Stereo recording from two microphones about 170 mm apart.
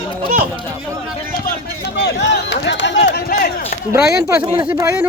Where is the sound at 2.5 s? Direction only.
90° left; by 3.5 s 60° left (ahead or behind).